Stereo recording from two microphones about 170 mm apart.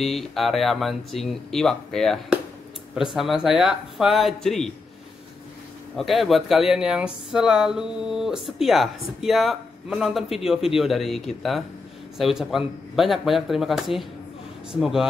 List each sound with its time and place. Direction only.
0.0 s speech: centre (ahead or behind)
5.9 s speech: centre (ahead or behind)